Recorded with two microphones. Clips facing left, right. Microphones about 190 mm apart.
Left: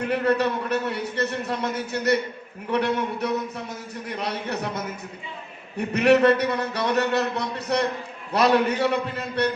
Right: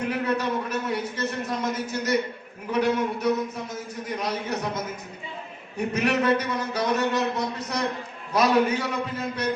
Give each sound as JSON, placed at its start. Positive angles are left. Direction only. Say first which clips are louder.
{"t": 0.1, "sound": "a man's voice", "louder": "left 6 dB", "side_deg": 65}
{"t": 5.9, "sound": "a man's voice", "louder": "left 6 dB", "side_deg": 65}